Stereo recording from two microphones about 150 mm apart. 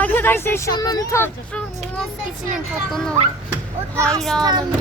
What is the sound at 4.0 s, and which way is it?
Speech, 20° right (ahead or behind).